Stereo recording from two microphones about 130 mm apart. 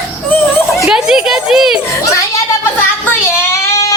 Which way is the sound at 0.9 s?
5° right (ahead or behind).